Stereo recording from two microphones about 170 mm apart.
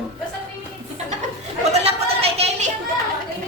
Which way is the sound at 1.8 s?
35° right (ahead or behind).